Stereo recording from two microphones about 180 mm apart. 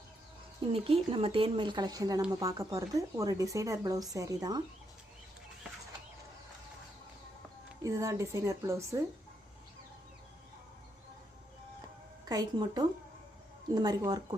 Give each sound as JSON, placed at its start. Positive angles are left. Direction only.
{"t": 0.7, "sound": "speech", "side_deg": -30}
{"t": 7.8, "sound": "a woman's voice", "side_deg": -15}
{"t": 12.2, "sound": "speech", "side_deg": -20}